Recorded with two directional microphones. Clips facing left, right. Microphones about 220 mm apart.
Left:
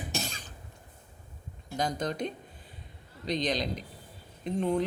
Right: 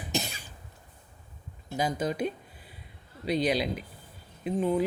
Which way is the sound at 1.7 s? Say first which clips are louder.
Right 2 dB; 5° right (ahead or behind).